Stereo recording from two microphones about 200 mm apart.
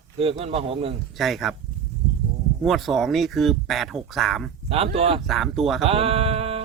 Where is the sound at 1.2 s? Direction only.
Centre (ahead or behind).